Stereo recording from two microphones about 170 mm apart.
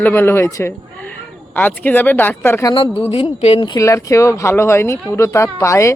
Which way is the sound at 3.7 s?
20° left (ahead or behind).